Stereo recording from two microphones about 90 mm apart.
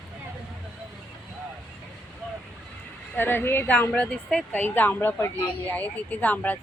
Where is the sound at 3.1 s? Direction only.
25° left (ahead or behind).